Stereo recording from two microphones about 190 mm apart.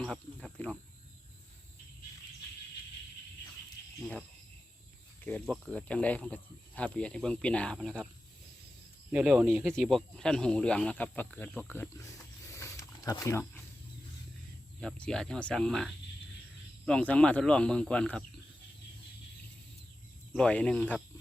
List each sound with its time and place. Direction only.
0.0 s speech: 5° left (ahead or behind)
5.2 s speech: 10° left (ahead or behind)
9.1 s speech: 5° right (ahead or behind)
9.7 s speech: 5° left (ahead or behind)
11.7 s a sound: 15° left (ahead or behind)
14.8 s speech: 5° left (ahead or behind)
20.3 s speech: 5° left (ahead or behind)